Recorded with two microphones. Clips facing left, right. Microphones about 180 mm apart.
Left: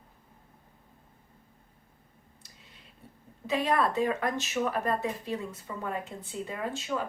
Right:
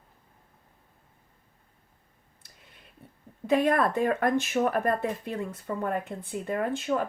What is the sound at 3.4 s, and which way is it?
A woman's voice, 50° right (ahead or behind).